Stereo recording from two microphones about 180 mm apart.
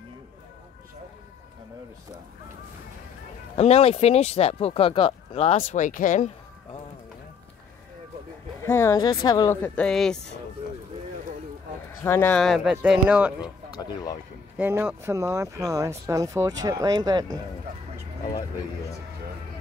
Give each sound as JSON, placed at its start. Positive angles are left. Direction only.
{"t": 3.5, "sound": "speech", "side_deg": 35}
{"t": 8.5, "sound": "speech", "side_deg": 15}
{"t": 9.6, "sound": "speech", "side_deg": 5}
{"t": 12.0, "sound": "speech", "side_deg": 10}
{"t": 14.6, "sound": "speech", "side_deg": -10}